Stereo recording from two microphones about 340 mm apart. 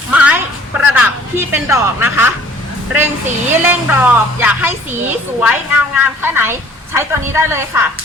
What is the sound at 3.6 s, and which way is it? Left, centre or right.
A woman's voice, centre.